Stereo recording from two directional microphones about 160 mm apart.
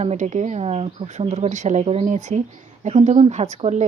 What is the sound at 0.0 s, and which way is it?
Speech, 45° right (ahead or behind).